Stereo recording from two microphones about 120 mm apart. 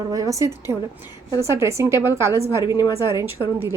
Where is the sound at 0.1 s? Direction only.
30° right (ahead or behind).